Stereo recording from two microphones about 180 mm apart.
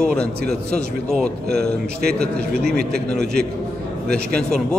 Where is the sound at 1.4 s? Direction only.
60° right (ahead or behind).